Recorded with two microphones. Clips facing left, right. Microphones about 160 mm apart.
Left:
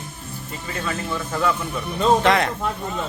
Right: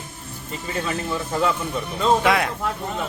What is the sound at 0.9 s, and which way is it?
Speech, 20° right (ahead or behind).